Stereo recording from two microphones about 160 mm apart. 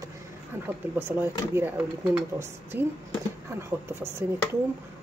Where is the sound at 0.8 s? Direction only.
10° right (ahead or behind).